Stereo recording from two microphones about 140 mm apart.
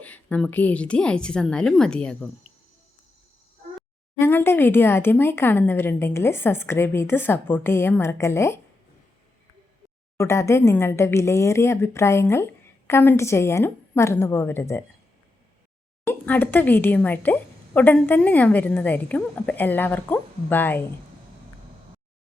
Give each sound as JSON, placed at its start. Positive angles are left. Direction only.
{"t": 0.0, "sound": "speech", "side_deg": 10}
{"t": 4.2, "sound": "speech", "side_deg": 15}
{"t": 10.2, "sound": "speech", "side_deg": 20}
{"t": 16.0, "sound": "speech", "side_deg": 10}